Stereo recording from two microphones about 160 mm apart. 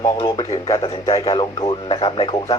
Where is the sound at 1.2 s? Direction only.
35° left (ahead or behind).